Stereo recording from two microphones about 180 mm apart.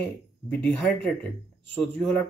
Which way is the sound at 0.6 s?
5° left (ahead or behind).